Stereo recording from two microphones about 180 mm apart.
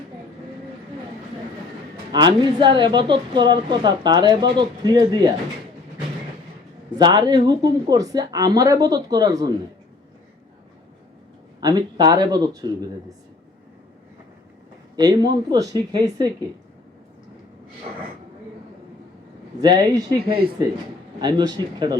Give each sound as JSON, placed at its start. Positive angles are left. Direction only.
{"t": 2.1, "sound": "a woman's voice", "side_deg": -25}
{"t": 6.9, "sound": "a woman's voice", "side_deg": -25}
{"t": 11.6, "sound": "a woman's voice", "side_deg": -20}
{"t": 14.9, "sound": "a woman's voice", "side_deg": -20}
{"t": 19.5, "sound": "a woman's voice", "side_deg": -25}